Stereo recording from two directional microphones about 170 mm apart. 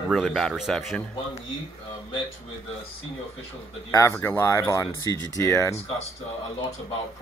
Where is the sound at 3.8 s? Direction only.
15° left (ahead or behind).